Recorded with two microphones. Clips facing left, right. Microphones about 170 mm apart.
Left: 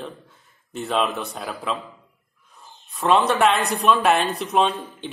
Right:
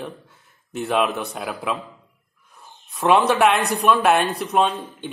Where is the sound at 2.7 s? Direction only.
15° right (ahead or behind).